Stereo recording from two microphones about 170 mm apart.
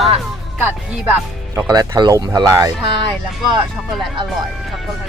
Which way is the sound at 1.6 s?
20° right (ahead or behind).